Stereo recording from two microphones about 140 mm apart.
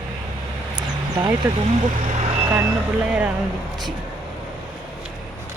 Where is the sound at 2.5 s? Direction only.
10° right (ahead or behind).